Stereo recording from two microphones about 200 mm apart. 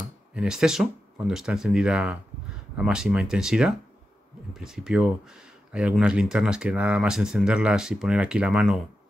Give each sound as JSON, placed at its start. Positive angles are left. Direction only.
{"t": 0.3, "sound": "speech", "side_deg": -5}